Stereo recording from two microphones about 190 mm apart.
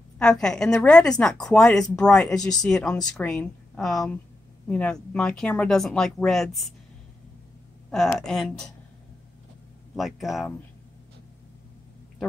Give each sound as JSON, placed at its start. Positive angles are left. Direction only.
{"t": 0.2, "sound": "a woman's voice", "side_deg": 5}
{"t": 7.9, "sound": "a woman's voice", "side_deg": 0}
{"t": 9.9, "sound": "a woman's voice", "side_deg": 0}